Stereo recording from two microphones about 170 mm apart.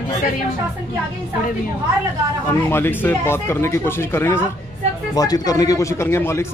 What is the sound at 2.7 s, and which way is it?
Speech, 10° left (ahead or behind).